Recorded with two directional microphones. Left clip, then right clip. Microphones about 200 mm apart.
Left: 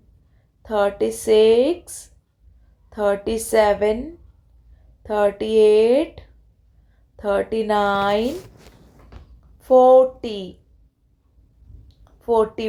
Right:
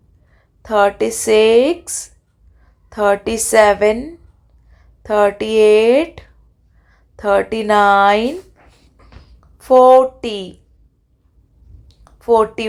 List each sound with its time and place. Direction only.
0.6 s speech: 25° right (ahead or behind)
9.6 s speech: 25° right (ahead or behind)
11.9 s a sound: 25° right (ahead or behind)